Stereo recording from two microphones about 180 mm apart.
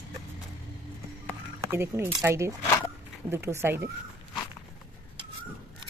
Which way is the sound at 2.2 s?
15° right (ahead or behind).